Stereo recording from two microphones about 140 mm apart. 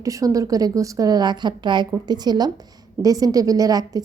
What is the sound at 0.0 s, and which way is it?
A woman's voice, 25° right (ahead or behind).